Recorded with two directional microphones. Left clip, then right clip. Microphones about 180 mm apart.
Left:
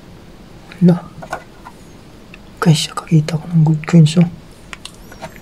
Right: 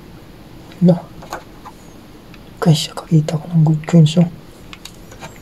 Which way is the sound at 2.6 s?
5° left (ahead or behind).